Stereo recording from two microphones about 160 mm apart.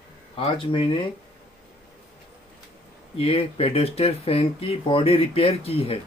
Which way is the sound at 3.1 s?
35° left (ahead or behind).